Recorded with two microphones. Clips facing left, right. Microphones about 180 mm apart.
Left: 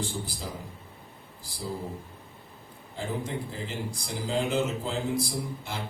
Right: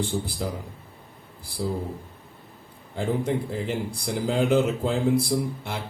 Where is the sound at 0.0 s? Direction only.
60° right (ahead or behind).